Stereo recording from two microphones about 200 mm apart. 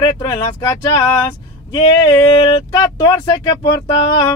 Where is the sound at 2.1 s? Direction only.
25° left (ahead or behind).